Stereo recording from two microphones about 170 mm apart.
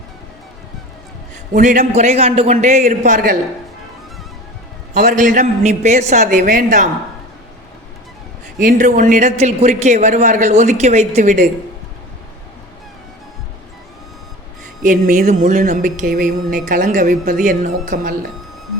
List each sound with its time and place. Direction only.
1.5 s speech: 50° right (ahead or behind)
1.9 s speech: 40° right (ahead or behind)
4.9 s speech: 45° right (ahead or behind)
8.5 s speech: 50° right (ahead or behind)
14.8 s speech: 50° right (ahead or behind)